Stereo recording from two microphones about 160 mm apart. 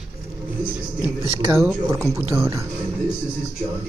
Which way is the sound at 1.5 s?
20° right (ahead or behind).